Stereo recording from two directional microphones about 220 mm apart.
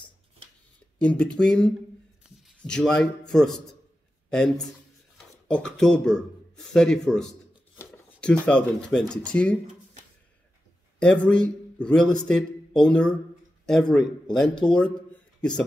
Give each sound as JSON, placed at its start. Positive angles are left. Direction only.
{"t": 0.9, "sound": "speech", "side_deg": 5}
{"t": 11.0, "sound": "a man's voice", "side_deg": 5}